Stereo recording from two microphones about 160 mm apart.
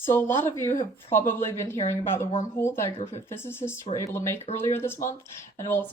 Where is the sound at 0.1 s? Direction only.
15° left (ahead or behind).